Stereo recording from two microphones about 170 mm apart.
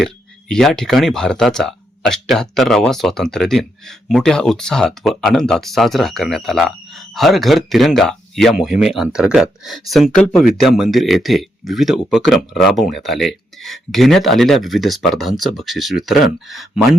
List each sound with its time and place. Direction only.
0.0 s speech: 5° left (ahead or behind)